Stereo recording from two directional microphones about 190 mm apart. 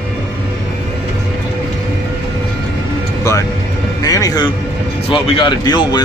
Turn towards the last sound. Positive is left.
turn(degrees=20)  # may be behind; listen again after turning